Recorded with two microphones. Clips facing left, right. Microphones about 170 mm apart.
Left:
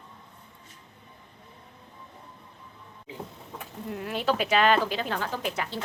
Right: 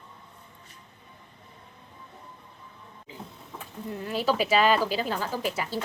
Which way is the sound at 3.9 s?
Centre (ahead or behind).